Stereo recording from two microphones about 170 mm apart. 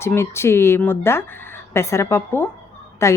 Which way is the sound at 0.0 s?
15° left (ahead or behind).